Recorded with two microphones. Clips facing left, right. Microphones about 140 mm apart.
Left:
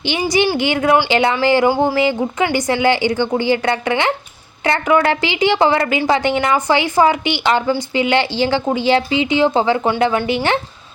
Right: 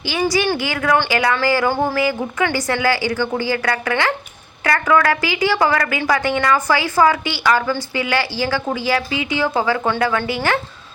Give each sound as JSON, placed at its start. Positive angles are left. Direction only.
{"t": 0.0, "sound": "a woman's voice", "side_deg": 20}